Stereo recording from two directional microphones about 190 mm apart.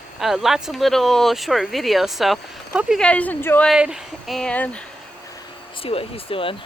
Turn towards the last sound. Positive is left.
turn(degrees=30)  # may be behind; listen again after turning